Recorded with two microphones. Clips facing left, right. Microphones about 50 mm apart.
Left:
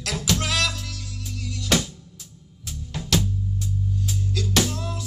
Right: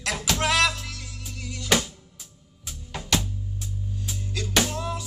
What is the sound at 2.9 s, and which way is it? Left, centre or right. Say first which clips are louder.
Drum: left 2 dB; centre.